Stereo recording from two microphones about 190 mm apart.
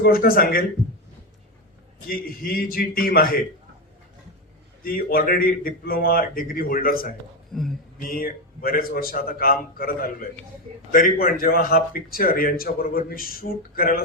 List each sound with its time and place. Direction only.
0.0 s a man's voice: 50° left (ahead or behind)
2.0 s a man's voice: 50° left (ahead or behind)
4.8 s a man's voice: 50° left (ahead or behind)